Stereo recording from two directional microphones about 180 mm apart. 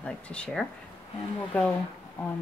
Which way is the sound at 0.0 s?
5° left (ahead or behind).